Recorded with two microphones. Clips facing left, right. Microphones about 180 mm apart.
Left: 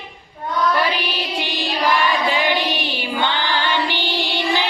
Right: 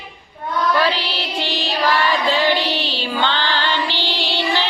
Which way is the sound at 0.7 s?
15° left (ahead or behind).